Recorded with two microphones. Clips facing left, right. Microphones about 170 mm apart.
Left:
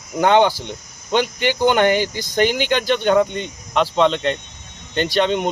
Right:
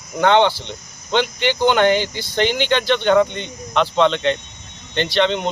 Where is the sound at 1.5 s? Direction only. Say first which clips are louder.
Even; 10° left (ahead or behind).